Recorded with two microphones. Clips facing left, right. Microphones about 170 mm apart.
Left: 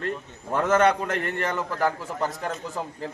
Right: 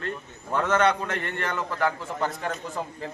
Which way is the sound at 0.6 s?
40° left (ahead or behind).